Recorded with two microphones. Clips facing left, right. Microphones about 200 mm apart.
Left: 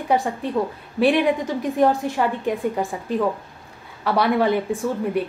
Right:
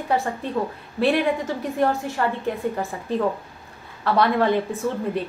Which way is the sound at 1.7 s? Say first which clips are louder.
Left 4 dB; 15° left (ahead or behind).